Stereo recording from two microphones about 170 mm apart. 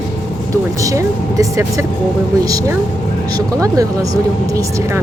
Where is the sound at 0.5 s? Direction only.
20° right (ahead or behind).